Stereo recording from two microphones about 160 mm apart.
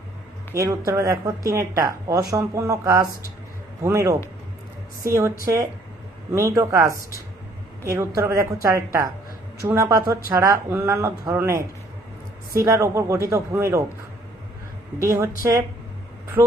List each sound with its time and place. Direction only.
0.5 s a woman's voice: 20° right (ahead or behind)
15.0 s a woman's voice: 20° right (ahead or behind)